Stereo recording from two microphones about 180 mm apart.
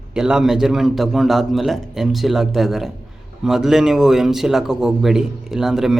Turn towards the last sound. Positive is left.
turn(degrees=0)  # may be behind; listen again after turning